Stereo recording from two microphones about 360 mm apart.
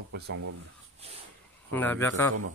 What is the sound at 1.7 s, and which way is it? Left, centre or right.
Speech, centre.